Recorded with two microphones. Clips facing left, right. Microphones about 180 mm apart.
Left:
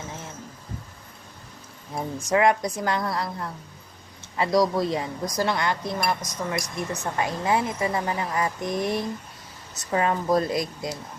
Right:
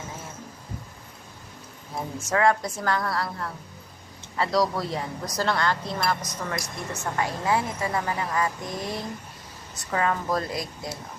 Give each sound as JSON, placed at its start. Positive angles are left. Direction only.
{"t": 2.1, "sound": "a woman's voice", "side_deg": 15}